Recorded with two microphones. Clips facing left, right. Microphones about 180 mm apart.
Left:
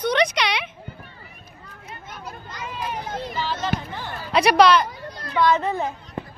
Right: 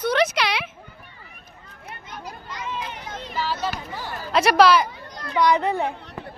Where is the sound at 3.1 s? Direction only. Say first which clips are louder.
Left 5 dB; 40° left (ahead or behind).